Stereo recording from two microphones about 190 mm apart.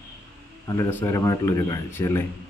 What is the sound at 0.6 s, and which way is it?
Speech, 15° left (ahead or behind).